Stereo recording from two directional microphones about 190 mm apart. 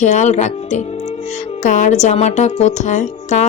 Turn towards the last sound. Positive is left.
turn(degrees=40)  # may be behind; listen again after turning